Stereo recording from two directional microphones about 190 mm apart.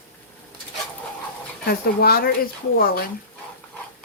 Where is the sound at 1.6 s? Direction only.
55° left (ahead or behind).